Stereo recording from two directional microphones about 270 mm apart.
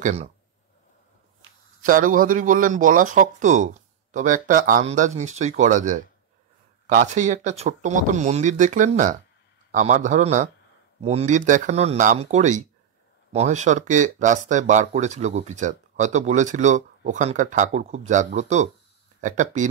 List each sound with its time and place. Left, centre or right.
0.0 s speech: right
1.8 s speech: right